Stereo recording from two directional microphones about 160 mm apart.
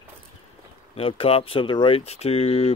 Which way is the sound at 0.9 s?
35° left (ahead or behind).